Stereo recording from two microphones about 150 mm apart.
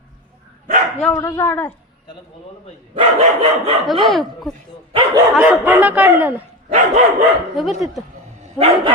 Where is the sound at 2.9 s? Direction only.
40° right (ahead or behind).